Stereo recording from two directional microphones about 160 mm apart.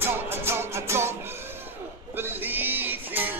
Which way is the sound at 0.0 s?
15° right (ahead or behind).